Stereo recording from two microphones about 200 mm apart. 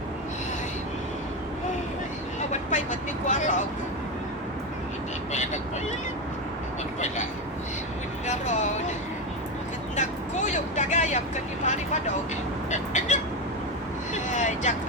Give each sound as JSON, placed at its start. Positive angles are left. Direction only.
{"t": 2.5, "sound": "vehicle", "side_deg": 40}
{"t": 8.3, "sound": "speech", "side_deg": 35}
{"t": 9.9, "sound": "vehicle", "side_deg": 35}
{"t": 12.7, "sound": "squawk", "side_deg": 35}
{"t": 14.1, "sound": "vehicle", "side_deg": 35}